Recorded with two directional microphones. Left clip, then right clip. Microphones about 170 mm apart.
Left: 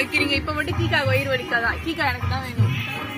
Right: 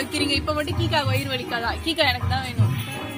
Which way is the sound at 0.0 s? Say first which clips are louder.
Left 2 dB; 90° right.